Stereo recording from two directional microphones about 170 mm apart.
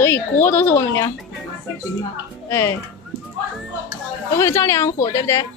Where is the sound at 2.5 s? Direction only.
15° left (ahead or behind).